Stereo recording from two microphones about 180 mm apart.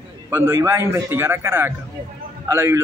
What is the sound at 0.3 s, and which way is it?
Speech, 15° right (ahead or behind).